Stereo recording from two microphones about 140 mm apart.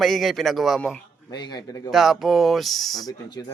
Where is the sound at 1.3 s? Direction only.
30° left (ahead or behind).